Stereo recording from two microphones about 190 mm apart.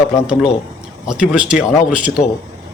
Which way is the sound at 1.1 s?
5° right (ahead or behind).